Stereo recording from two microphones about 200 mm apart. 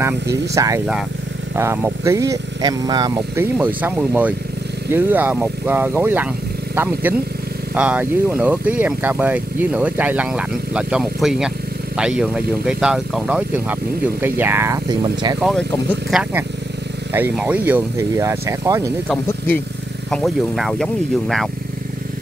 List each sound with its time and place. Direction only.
0.0 s speech: 15° right (ahead or behind)
3.5 s speech: 10° right (ahead or behind)
16.1 s speech: 5° right (ahead or behind)
19.2 s speech: 10° left (ahead or behind)